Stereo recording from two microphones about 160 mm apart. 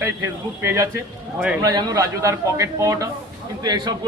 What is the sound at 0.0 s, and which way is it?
A man's voice, 15° right (ahead or behind).